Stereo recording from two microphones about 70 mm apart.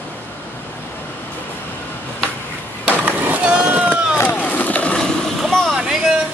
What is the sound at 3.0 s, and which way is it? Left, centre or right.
Skateboard, right.